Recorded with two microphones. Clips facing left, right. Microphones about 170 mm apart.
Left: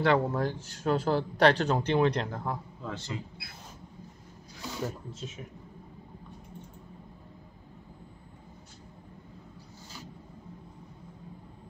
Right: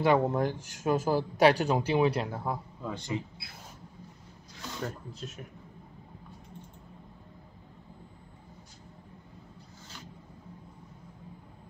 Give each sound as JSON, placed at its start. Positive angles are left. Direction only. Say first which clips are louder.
{"t": 0.2, "sound": "speech", "louder": "right 2 dB", "side_deg": -15}
{"t": 4.6, "sound": "speech", "louder": "left 2 dB", "side_deg": 5}